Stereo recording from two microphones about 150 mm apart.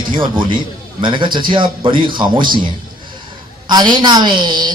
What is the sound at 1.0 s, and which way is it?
Speech, 30° right (ahead or behind).